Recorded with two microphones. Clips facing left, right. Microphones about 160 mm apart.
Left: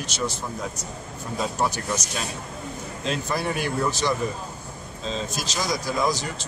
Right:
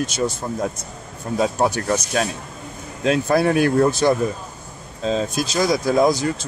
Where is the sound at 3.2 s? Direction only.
60° right (ahead or behind).